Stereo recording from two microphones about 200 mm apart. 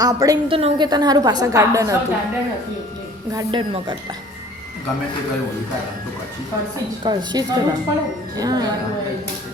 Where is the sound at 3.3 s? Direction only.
25° right (ahead or behind).